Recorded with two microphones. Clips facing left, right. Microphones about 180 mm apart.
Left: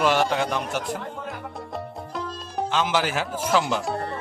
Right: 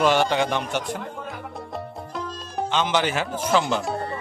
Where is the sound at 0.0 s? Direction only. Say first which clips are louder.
Right 2 dB; centre (ahead or behind).